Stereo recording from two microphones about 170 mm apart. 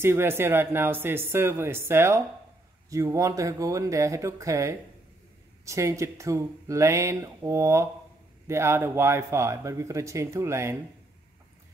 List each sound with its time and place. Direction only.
0.0 s speech: 15° right (ahead or behind)